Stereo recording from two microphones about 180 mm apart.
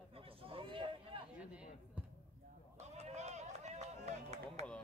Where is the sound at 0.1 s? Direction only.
30° right (ahead or behind).